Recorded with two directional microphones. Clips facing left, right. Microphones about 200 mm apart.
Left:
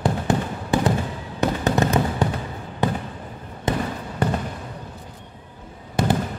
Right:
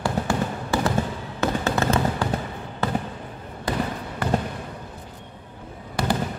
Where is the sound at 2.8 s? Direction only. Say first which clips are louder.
Left 2 dB; 15° left (ahead or behind).